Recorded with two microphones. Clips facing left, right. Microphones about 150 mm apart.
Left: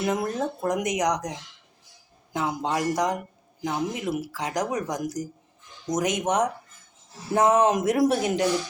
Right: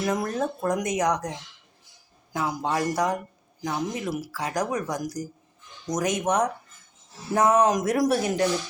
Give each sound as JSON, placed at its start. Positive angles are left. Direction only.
{"t": 0.0, "sound": "speech", "side_deg": 25}